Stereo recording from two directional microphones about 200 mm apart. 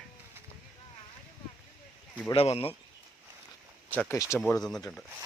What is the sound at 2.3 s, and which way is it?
Speech, 30° left (ahead or behind).